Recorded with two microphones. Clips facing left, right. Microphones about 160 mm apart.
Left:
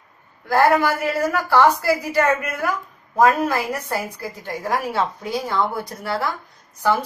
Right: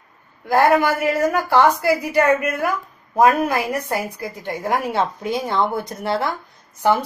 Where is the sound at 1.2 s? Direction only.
20° right (ahead or behind).